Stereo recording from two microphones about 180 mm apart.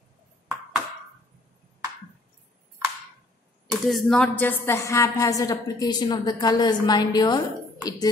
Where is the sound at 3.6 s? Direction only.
Centre (ahead or behind).